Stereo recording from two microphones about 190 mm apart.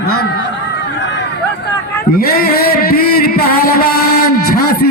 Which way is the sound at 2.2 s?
50° left (ahead or behind).